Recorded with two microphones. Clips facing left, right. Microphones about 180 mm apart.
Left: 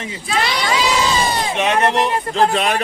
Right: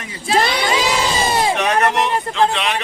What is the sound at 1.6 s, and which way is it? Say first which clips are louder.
Speech: left 1 dB; 25° left (ahead or behind).